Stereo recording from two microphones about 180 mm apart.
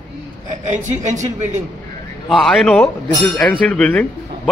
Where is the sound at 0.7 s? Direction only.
40° right (ahead or behind).